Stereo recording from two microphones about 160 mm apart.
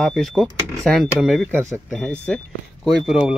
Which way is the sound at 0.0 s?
Centre (ahead or behind).